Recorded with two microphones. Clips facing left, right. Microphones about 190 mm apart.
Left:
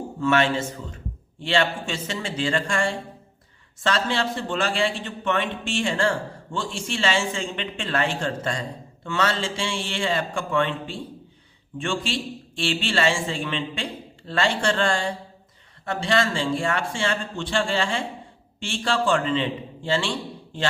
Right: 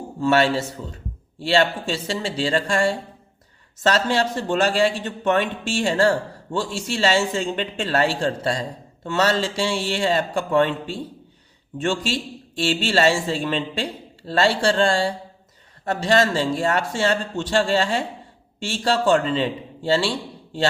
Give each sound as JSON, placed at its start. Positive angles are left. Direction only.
{"t": 0.2, "sound": "speech", "side_deg": -35}
{"t": 12.5, "sound": "speech", "side_deg": -40}